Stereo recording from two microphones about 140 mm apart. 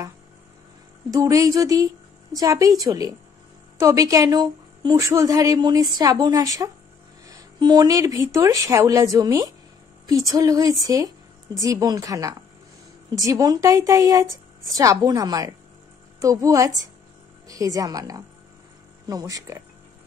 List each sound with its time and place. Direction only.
1.1 s a woman's voice: 25° right (ahead or behind)